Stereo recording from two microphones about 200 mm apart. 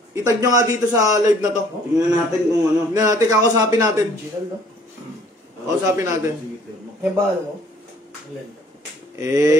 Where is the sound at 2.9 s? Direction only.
15° right (ahead or behind).